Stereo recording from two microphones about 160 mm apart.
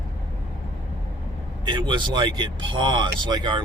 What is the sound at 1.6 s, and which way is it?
Speech, 30° right (ahead or behind).